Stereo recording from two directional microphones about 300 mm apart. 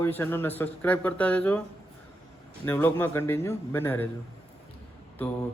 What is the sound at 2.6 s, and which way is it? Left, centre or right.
Speech, centre.